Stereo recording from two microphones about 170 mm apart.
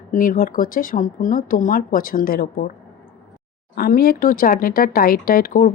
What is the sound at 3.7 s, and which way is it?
A woman's voice, 60° left (ahead or behind).